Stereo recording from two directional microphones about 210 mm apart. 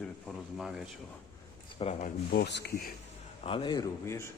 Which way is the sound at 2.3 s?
50° left (ahead or behind).